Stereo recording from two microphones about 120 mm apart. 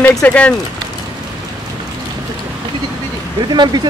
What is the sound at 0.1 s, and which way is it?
Speech, 10° left (ahead or behind).